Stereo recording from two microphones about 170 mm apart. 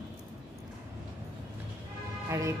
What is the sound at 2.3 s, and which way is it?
Speech, 15° right (ahead or behind).